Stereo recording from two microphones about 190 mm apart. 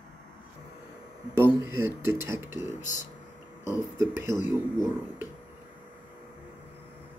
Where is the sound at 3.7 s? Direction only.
15° right (ahead or behind).